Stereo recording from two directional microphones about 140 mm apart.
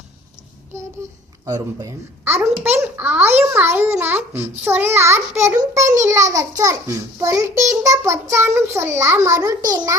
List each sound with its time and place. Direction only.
1.0 s a child's voice: 20° right (ahead or behind)
2.2 s a child's voice: 15° right (ahead or behind)